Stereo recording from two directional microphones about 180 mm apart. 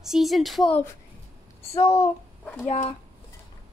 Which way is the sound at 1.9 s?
15° left (ahead or behind).